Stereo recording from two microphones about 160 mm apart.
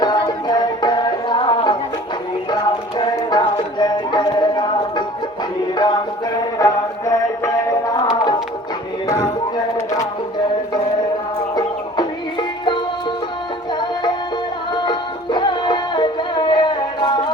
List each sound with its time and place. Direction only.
0.0 s music: 25° left (ahead or behind)
9.0 s a sound: 20° left (ahead or behind)
11.5 s music: 25° left (ahead or behind)
14.8 s music: 30° left (ahead or behind)